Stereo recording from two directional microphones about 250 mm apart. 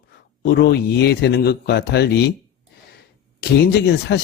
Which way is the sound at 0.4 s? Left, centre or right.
Left.